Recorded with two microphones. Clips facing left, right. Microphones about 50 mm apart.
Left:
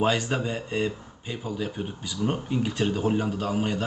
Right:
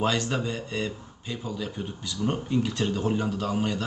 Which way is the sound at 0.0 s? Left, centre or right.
Centre.